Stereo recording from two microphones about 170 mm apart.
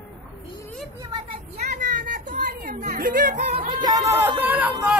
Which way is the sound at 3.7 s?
25° right (ahead or behind).